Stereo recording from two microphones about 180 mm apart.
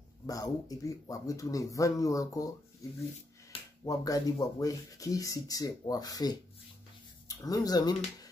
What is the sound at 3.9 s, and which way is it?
Speech, 20° left (ahead or behind).